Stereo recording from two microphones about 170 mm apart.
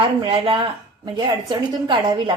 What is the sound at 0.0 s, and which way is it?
A woman's voice, 30° right (ahead or behind).